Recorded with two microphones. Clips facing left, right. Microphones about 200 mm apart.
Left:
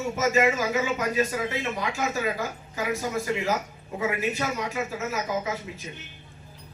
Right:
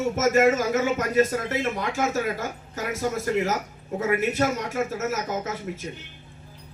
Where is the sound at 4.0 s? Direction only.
50° right (ahead or behind).